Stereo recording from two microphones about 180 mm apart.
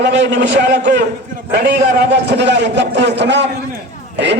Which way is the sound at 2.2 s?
75° right (ahead or behind).